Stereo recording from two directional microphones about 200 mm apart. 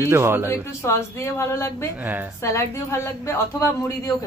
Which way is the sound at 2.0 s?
10° right (ahead or behind).